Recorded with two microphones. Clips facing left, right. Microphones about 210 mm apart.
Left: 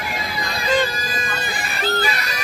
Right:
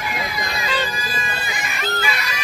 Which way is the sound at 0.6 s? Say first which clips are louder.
Left 8 dB; 40° left (ahead or behind).